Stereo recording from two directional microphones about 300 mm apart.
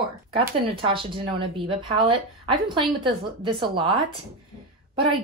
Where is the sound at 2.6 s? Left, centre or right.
Centre.